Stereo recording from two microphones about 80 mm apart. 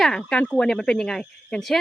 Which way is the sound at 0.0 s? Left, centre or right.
Centre.